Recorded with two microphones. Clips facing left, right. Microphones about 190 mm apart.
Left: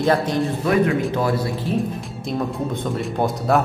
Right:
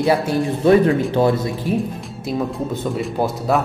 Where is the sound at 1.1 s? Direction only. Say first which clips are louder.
Right 4 dB; 25° right (ahead or behind).